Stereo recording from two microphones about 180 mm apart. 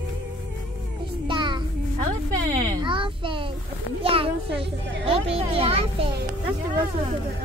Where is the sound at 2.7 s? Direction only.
25° right (ahead or behind).